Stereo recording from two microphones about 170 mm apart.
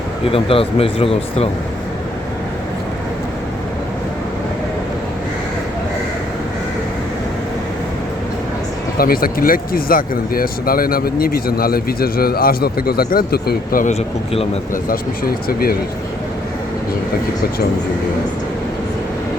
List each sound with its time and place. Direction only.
0.3 s speech: 35° left (ahead or behind)
9.0 s speech: 60° left (ahead or behind)